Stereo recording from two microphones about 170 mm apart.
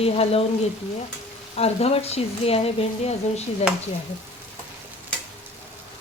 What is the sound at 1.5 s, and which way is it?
A woman's voice, 35° left (ahead or behind).